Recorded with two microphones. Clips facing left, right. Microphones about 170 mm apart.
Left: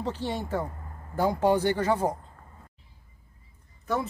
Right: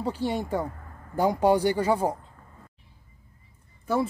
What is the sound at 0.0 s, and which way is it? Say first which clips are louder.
Speech: right 3 dB; 10° right (ahead or behind).